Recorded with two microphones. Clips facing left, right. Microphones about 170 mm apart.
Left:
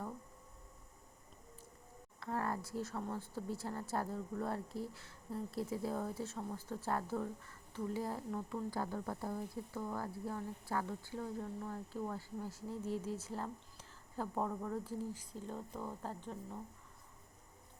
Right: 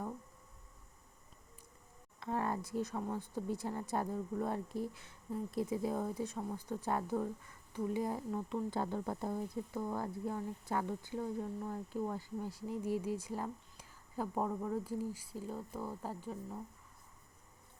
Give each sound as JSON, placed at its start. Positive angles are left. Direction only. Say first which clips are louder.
{"t": 2.2, "sound": "speech", "louder": "right 2 dB", "side_deg": -20}